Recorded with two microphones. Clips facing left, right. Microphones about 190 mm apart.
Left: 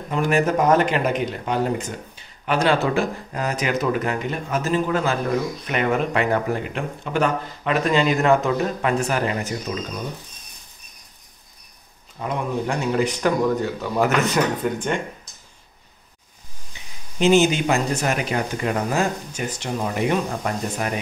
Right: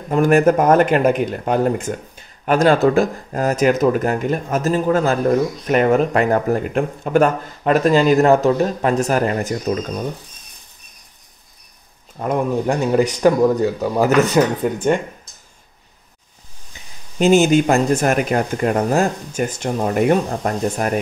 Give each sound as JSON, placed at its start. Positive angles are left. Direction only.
{"t": 0.1, "sound": "speech", "side_deg": -50}
{"t": 12.2, "sound": "speech", "side_deg": -45}
{"t": 17.2, "sound": "speech", "side_deg": -45}